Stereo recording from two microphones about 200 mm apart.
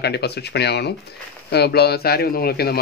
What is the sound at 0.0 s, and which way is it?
Speech, 55° left (ahead or behind).